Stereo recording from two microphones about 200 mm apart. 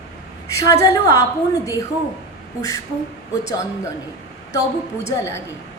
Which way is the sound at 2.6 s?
15° left (ahead or behind).